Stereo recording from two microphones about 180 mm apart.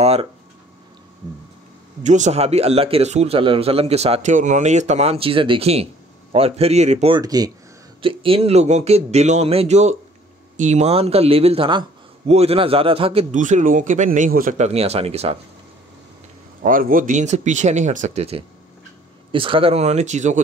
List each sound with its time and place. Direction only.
0.0 s speech: 35° right (ahead or behind)
2.0 s speech: 40° right (ahead or behind)
7.2 s speech: 20° right (ahead or behind)
16.6 s speech: 50° right (ahead or behind)